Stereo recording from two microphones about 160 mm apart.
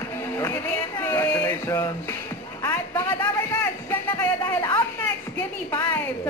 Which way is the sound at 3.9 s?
15° left (ahead or behind).